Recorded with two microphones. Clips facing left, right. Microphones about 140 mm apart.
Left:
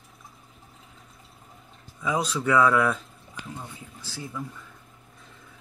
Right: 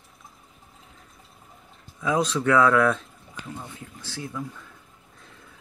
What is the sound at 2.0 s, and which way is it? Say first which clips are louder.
Speech: right 3 dB; 5° left (ahead or behind).